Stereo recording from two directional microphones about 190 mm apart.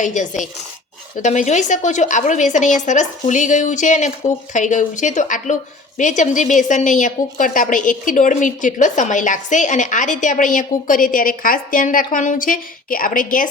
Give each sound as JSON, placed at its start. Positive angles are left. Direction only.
{"t": 0.0, "sound": "a woman's voice", "side_deg": 40}